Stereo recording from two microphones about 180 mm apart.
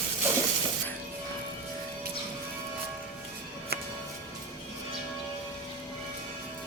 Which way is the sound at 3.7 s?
65° right (ahead or behind).